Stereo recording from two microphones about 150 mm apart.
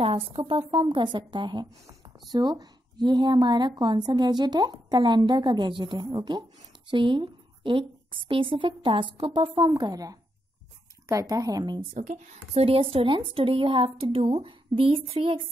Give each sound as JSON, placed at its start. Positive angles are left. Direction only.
{"t": 0.0, "sound": "a woman's voice", "side_deg": -35}
{"t": 11.9, "sound": "a woman's voice", "side_deg": -55}